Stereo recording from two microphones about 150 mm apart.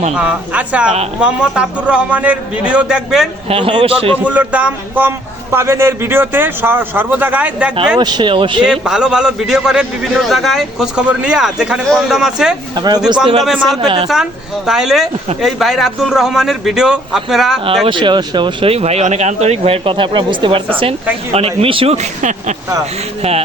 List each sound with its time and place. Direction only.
0.1 s a man's voice: 5° right (ahead or behind)
3.5 s speech: 35° right (ahead or behind)
4.2 s a man's voice: 10° right (ahead or behind)
7.9 s speech: 30° right (ahead or behind)
8.6 s a man's voice: 5° right (ahead or behind)
12.7 s speech: 25° right (ahead or behind)
13.4 s a man's voice: centre (ahead or behind)
13.8 s speech: 30° right (ahead or behind)
14.7 s a man's voice: 5° right (ahead or behind)
17.8 s speech: 30° right (ahead or behind); by 22.5 s 55° right (ahead or behind)